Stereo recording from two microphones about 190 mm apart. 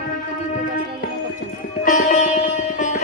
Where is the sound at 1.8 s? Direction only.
40° left (ahead or behind).